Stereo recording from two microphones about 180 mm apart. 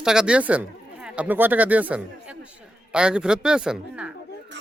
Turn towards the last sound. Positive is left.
turn(degrees=-5)  # may be behind; listen again after turning